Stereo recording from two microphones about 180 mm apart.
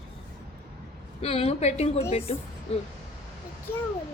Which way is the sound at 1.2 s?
35° left (ahead or behind).